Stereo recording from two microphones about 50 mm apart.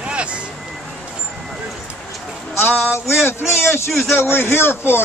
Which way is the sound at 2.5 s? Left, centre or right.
Left.